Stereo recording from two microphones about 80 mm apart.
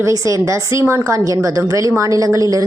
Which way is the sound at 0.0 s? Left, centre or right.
Right.